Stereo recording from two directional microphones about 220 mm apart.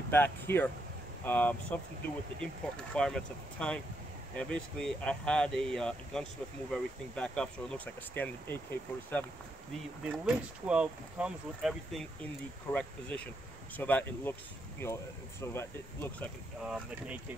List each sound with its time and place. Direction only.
0.1 s speech: 10° left (ahead or behind)
10.0 s speech: 5° right (ahead or behind)
16.6 s speech: 5° right (ahead or behind)